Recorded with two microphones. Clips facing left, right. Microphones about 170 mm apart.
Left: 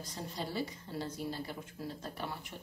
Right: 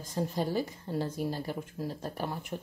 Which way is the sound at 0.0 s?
50° right (ahead or behind).